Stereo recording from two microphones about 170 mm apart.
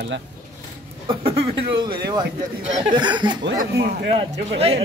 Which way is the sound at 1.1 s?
30° right (ahead or behind).